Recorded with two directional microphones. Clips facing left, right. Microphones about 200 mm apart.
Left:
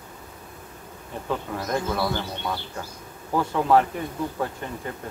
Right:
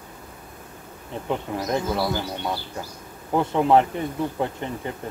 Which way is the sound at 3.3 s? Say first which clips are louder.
Right 2 dB; 20° right (ahead or behind).